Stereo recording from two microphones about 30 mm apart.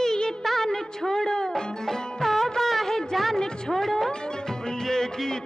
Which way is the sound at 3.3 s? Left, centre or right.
Centre.